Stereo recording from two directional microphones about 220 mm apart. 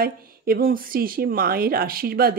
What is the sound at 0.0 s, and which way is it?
Speech, 40° right (ahead or behind).